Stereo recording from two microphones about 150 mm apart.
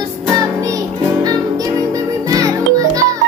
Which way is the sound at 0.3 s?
20° right (ahead or behind).